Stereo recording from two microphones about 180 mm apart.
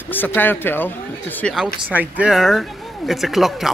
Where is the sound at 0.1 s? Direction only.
10° left (ahead or behind).